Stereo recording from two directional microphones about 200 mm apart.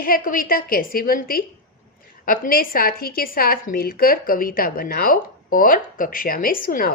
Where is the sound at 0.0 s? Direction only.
45° left (ahead or behind).